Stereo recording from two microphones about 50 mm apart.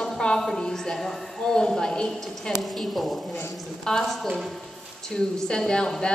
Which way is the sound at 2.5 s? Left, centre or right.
Centre.